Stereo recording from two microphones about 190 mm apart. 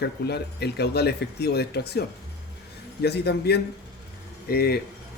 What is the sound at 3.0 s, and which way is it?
Speech, 60° left (ahead or behind).